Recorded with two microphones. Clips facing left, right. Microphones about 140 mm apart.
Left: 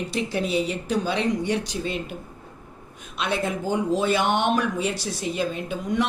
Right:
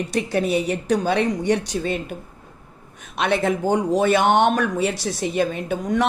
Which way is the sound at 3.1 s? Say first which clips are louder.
Right 6 dB; 65° right (ahead or behind).